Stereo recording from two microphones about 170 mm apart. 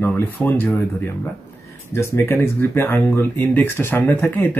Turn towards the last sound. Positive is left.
turn(degrees=10)  # may be behind; listen again after turning